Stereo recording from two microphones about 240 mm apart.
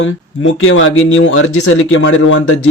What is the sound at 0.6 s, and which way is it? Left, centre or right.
Speech, left.